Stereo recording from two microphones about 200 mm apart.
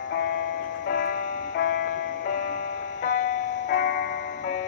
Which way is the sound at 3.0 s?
40° left (ahead or behind).